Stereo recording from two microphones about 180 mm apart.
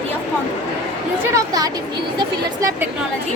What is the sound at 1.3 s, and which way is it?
Speech, 20° right (ahead or behind).